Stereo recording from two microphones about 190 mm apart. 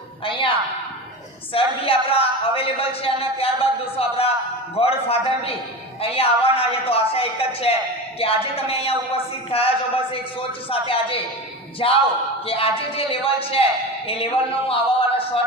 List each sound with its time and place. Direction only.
0.3 s a man's voice: 25° left (ahead or behind)
1.5 s a sound: 30° left (ahead or behind)
6.0 s a man's voice: 30° left (ahead or behind)